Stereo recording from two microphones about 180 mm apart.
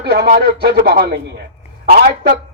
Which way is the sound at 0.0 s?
65° right (ahead or behind).